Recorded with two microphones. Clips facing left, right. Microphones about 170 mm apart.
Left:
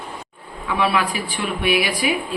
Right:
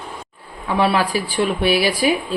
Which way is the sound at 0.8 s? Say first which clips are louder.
Right 3 dB; 35° right (ahead or behind).